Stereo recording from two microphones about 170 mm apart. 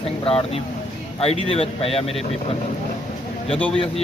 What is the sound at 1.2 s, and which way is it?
Speech, 35° left (ahead or behind).